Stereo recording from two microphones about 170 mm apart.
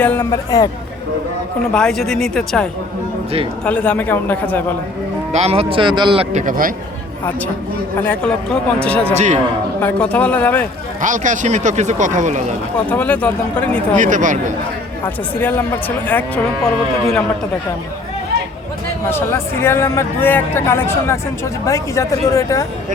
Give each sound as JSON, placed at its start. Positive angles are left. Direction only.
{"t": 0.0, "sound": "speech", "side_deg": 15}
{"t": 1.7, "sound": "a woman's voice", "side_deg": 5}
{"t": 5.3, "sound": "speech", "side_deg": -35}
{"t": 6.3, "sound": "speech", "side_deg": -55}
{"t": 8.0, "sound": "speech", "side_deg": 10}
{"t": 9.1, "sound": "speech", "side_deg": -45}
{"t": 9.8, "sound": "speech", "side_deg": 10}
{"t": 11.0, "sound": "speech", "side_deg": -50}
{"t": 12.9, "sound": "speech", "side_deg": 10}
{"t": 13.9, "sound": "speech", "side_deg": -50}
{"t": 15.0, "sound": "speech", "side_deg": 15}
{"t": 19.1, "sound": "speech", "side_deg": 15}